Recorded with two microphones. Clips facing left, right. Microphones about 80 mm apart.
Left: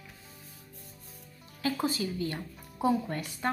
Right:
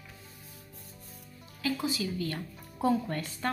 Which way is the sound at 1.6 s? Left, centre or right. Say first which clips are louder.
Left 1 dB; left.